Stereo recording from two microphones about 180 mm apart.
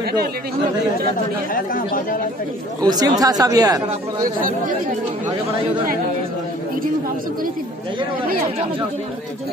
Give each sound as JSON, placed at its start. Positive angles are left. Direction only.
{"t": 1.1, "sound": "speech", "side_deg": 50}
{"t": 2.8, "sound": "speech", "side_deg": -20}
{"t": 4.2, "sound": "speech", "side_deg": -50}